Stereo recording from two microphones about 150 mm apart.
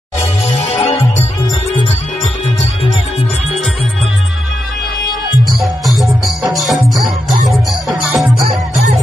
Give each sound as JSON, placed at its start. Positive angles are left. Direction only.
{"t": 0.5, "sound": "music", "side_deg": 45}
{"t": 5.6, "sound": "music", "side_deg": 0}